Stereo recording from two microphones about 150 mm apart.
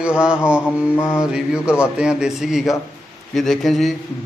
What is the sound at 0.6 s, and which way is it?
Mantra, 15° left (ahead or behind).